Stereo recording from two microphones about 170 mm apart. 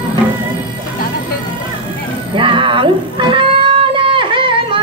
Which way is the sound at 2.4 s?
30° right (ahead or behind).